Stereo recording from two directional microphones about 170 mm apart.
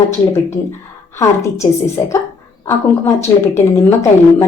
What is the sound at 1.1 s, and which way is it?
A woman's voice, 15° left (ahead or behind).